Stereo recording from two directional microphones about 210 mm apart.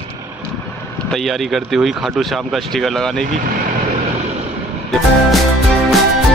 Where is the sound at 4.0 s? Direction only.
30° right (ahead or behind).